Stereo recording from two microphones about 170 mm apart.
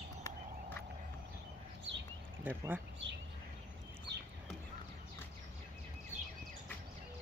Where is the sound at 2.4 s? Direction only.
10° right (ahead or behind).